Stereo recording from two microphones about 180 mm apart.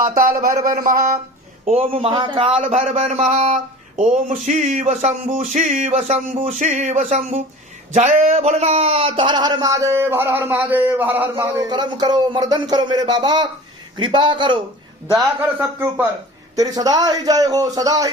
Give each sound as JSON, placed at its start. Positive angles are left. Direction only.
{"t": 0.6, "sound": "a sound", "side_deg": -50}
{"t": 1.6, "sound": "a man's voice", "side_deg": -35}
{"t": 15.1, "sound": "a man's voice", "side_deg": -10}
{"t": 16.6, "sound": "speech", "side_deg": -20}